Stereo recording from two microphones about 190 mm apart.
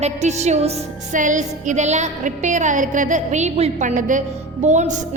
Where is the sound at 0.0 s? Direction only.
35° right (ahead or behind).